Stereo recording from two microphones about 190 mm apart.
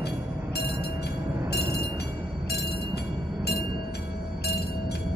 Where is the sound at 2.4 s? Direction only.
60° left (ahead or behind).